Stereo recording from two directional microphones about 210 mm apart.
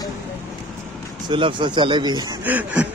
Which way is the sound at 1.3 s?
25° right (ahead or behind).